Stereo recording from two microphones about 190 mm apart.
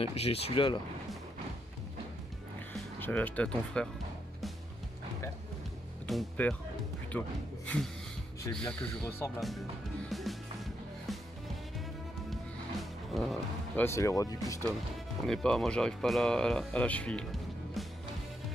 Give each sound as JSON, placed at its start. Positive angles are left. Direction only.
{"t": 0.0, "sound": "speech", "side_deg": 30}
{"t": 3.0, "sound": "speech", "side_deg": 10}
{"t": 6.0, "sound": "a man's voice", "side_deg": 5}
{"t": 10.0, "sound": "music", "side_deg": 0}
{"t": 13.1, "sound": "speech", "side_deg": 0}
{"t": 13.8, "sound": "speech", "side_deg": 15}
{"t": 15.2, "sound": "speech", "side_deg": 0}